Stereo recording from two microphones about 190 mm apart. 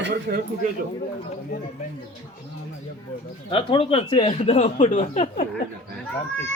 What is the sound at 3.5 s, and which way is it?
Speech, 30° left (ahead or behind).